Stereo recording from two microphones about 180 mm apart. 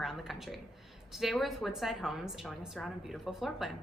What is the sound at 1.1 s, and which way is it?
A woman's voice, centre (ahead or behind).